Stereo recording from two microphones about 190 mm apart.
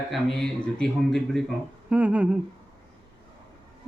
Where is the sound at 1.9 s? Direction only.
5° right (ahead or behind).